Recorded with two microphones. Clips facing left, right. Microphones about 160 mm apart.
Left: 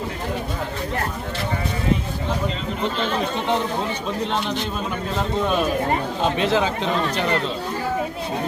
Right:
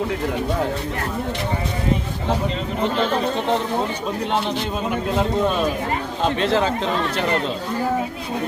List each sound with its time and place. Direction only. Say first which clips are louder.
6.4 s speech: right 1 dB; 5° left (ahead or behind)